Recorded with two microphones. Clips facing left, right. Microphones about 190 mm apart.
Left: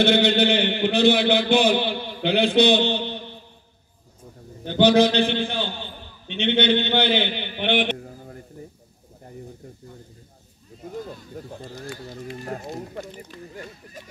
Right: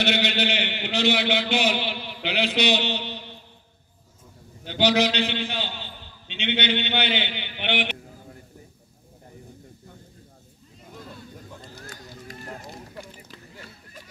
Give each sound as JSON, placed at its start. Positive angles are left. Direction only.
{"t": 0.0, "sound": "a man's voice", "side_deg": 55}
{"t": 4.6, "sound": "a man's voice", "side_deg": 55}